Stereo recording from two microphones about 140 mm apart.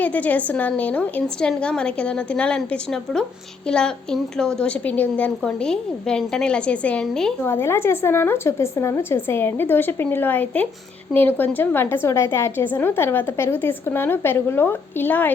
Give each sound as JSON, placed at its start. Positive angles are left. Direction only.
{"t": 0.0, "sound": "a woman's voice", "side_deg": 10}
{"t": 7.4, "sound": "a woman's voice", "side_deg": 20}